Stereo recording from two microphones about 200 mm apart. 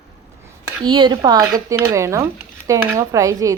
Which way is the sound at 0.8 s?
20° right (ahead or behind).